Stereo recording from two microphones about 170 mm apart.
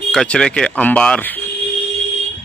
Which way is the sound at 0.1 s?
5° left (ahead or behind).